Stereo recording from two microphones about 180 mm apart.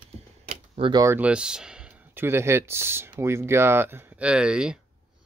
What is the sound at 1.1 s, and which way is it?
Speech, 5° right (ahead or behind).